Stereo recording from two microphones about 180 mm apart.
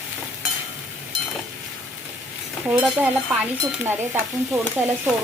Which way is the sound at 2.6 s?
10° right (ahead or behind).